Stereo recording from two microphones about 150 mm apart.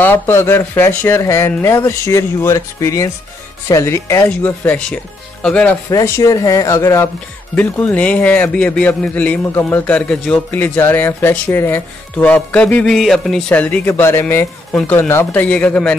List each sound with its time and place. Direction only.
0.0 s a man's voice: 15° left (ahead or behind)
5.9 s a man's voice: 20° left (ahead or behind)